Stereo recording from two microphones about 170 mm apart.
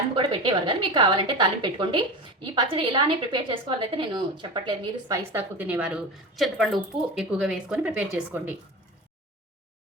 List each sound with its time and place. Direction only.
0.1 s a woman's voice: 30° right (ahead or behind)
5.1 s a woman's voice: 15° right (ahead or behind)